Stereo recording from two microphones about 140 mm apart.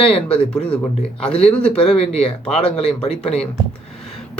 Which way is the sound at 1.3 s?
45° left (ahead or behind).